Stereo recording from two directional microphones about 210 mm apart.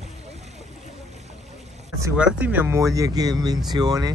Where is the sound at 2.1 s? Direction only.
5° right (ahead or behind).